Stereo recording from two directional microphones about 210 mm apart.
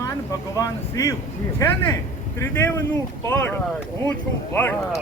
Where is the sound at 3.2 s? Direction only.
10° left (ahead or behind).